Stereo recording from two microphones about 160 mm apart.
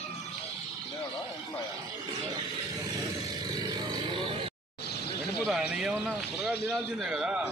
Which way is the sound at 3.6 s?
25° right (ahead or behind).